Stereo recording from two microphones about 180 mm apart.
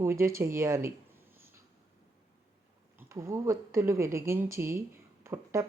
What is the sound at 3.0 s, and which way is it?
Speech, 15° right (ahead or behind).